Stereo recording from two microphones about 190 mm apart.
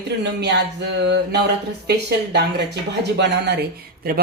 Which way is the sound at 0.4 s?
65° right (ahead or behind).